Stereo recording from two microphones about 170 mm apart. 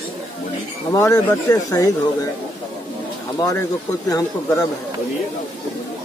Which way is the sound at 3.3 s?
20° left (ahead or behind).